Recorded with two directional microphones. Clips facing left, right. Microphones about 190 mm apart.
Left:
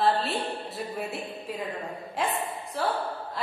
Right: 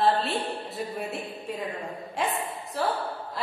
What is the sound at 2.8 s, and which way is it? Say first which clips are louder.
Speech: right 1 dB; centre (ahead or behind).